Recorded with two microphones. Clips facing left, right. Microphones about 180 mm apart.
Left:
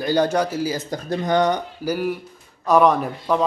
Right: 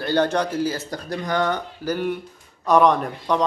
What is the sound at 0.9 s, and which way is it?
Speech, 20° left (ahead or behind).